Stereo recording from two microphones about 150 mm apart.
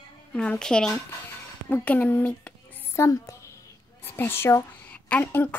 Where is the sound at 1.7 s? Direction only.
15° left (ahead or behind).